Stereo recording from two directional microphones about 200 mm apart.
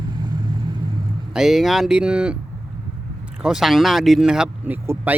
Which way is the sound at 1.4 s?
Centre (ahead or behind).